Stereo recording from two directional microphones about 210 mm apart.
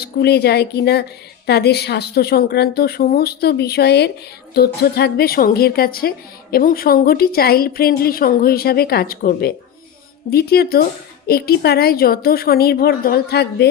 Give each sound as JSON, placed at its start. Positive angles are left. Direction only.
{"t": 0.0, "sound": "a woman's voice", "side_deg": 50}